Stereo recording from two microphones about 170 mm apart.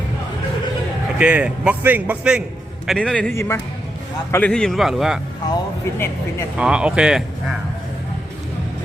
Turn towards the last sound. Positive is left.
turn(degrees=-5)  # may be behind; listen again after turning